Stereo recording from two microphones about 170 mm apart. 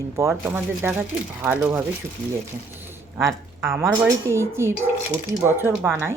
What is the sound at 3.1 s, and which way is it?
A woman's voice, 15° right (ahead or behind).